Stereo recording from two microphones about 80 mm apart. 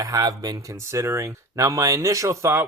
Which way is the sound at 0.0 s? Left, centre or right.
Right.